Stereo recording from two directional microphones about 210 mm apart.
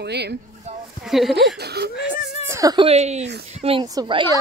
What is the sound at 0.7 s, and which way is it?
Speech, 30° right (ahead or behind).